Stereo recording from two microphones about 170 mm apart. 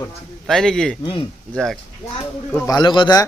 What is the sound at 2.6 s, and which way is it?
Speech, 25° left (ahead or behind).